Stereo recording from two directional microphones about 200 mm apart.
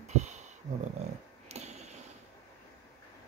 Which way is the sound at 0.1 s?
35° right (ahead or behind).